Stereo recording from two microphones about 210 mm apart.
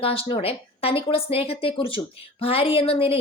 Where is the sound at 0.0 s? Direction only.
25° left (ahead or behind).